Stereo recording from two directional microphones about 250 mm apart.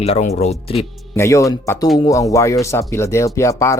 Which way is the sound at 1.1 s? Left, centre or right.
Centre.